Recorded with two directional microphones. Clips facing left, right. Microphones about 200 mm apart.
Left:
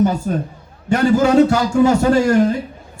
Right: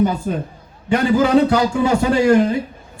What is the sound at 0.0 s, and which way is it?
A man's voice, 45° left (ahead or behind).